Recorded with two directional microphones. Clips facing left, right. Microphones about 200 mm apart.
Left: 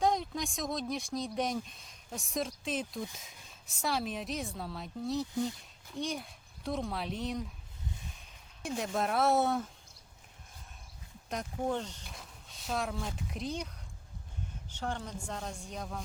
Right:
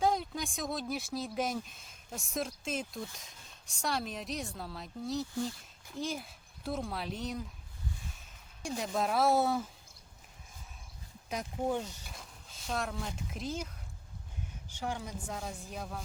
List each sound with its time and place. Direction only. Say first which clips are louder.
0.0 s speech: left 1 dB; centre (ahead or behind)
5.3 s speech: left 2 dB; 20° left (ahead or behind)
5.9 s speech: left 1 dB; centre (ahead or behind)
8.6 s speech: even; centre (ahead or behind)
11.3 s speech: even; 5° right (ahead or behind)
14.8 s speech: even; 10° right (ahead or behind)